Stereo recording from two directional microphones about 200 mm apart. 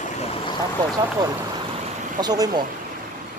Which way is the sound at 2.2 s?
20° right (ahead or behind).